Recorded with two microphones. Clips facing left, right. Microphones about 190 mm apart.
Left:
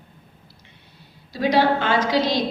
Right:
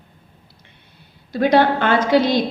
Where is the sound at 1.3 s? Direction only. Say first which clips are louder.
Right 3 dB; 55° right (ahead or behind).